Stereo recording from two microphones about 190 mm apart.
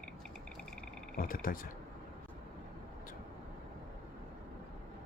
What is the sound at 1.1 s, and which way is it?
Speech, 50° left (ahead or behind).